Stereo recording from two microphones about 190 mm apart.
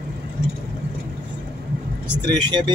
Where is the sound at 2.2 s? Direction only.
20° right (ahead or behind).